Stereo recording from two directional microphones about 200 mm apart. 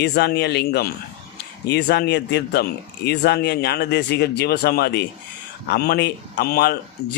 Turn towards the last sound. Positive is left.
turn(degrees=50)  # may be behind; listen again after turning